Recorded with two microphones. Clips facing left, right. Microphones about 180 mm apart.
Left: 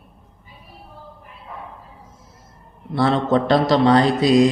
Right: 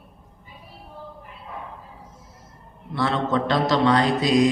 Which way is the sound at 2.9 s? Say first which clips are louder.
Left 5 dB; 35° left (ahead or behind).